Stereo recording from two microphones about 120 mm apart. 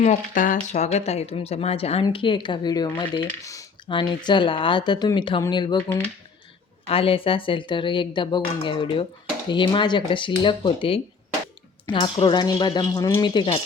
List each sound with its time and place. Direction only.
0.0 s speech: 85° left; by 2.0 s 55° left (ahead or behind)
2.0 s speech: 40° left (ahead or behind)
3.2 s speech: 25° left (ahead or behind)
3.8 s speech: 40° left (ahead or behind)
6.8 s speech: 50° left (ahead or behind)